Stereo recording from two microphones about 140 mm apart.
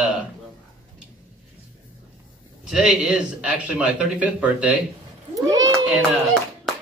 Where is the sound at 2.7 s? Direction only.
5° right (ahead or behind).